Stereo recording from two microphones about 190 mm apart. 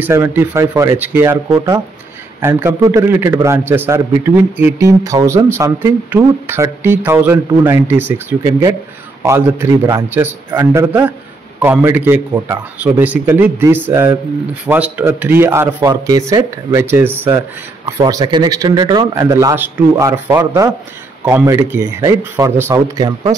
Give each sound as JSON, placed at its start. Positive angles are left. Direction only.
{"t": 0.0, "sound": "a man's voice", "side_deg": -10}